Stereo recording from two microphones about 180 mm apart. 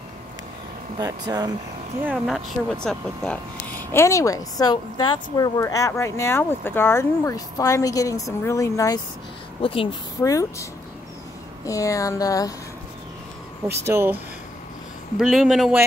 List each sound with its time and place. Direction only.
0.9 s speech: 20° right (ahead or behind)
2.0 s speech: centre (ahead or behind)
3.9 s a woman's voice: 15° left (ahead or behind)
9.6 s speech: 30° left (ahead or behind)
10.2 s a woman's voice: 20° left (ahead or behind)
13.8 s speech: 15° right (ahead or behind)
15.1 s speech: centre (ahead or behind)